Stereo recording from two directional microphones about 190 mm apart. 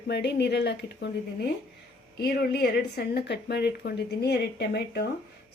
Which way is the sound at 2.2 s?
55° left (ahead or behind).